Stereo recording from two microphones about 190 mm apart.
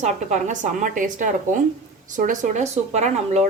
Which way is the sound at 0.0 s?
40° right (ahead or behind).